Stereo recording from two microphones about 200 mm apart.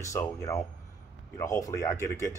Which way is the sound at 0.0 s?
15° left (ahead or behind).